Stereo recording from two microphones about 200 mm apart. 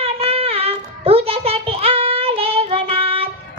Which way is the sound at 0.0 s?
30° right (ahead or behind).